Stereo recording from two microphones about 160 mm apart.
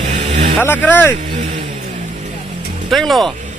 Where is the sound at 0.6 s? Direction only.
10° left (ahead or behind).